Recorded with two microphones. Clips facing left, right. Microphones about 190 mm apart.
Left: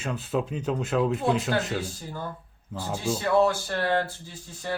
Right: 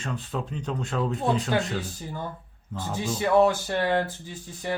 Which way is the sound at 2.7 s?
10° left (ahead or behind).